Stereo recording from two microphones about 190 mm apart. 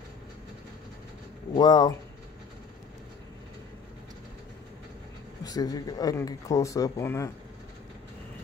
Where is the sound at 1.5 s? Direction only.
20° left (ahead or behind).